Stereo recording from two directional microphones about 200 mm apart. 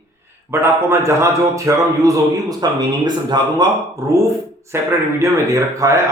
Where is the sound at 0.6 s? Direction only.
15° right (ahead or behind).